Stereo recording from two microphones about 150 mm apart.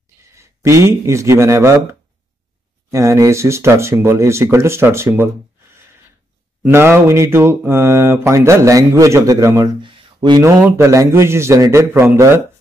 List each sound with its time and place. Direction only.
0.4 s speech: 20° right (ahead or behind)
6.6 s mantra: 15° right (ahead or behind)
9.8 s a sound: 30° right (ahead or behind)
10.6 s mantra: 20° right (ahead or behind)